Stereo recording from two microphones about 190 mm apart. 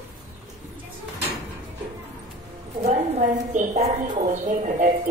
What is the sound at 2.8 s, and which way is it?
A woman's voice, 40° right (ahead or behind).